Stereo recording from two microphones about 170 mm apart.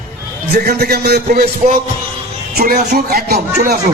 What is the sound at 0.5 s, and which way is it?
Speech, 70° right (ahead or behind).